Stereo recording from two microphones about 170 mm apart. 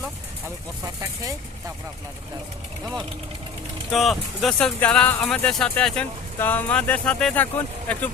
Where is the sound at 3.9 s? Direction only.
Centre (ahead or behind).